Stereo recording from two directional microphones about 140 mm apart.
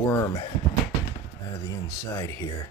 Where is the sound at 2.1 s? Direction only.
20° left (ahead or behind).